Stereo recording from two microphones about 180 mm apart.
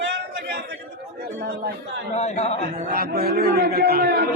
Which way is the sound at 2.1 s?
35° left (ahead or behind).